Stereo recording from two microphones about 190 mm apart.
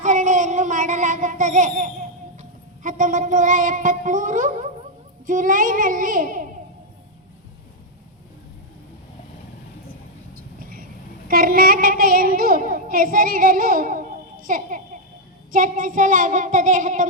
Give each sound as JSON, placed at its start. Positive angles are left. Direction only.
{"t": 0.0, "sound": "a sound", "side_deg": -40}
{"t": 5.2, "sound": "child singing", "side_deg": -45}
{"t": 10.6, "sound": "vehicle", "side_deg": -50}
{"t": 11.3, "sound": "child singing", "side_deg": -50}